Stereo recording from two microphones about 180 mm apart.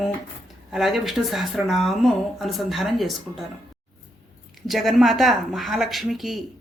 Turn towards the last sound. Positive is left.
turn(degrees=0)  # may be behind; listen again after turning